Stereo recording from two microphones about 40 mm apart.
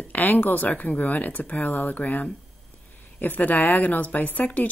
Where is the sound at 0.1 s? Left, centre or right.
Left.